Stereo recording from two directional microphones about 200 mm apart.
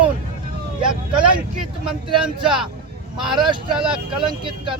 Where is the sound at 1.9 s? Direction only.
25° right (ahead or behind).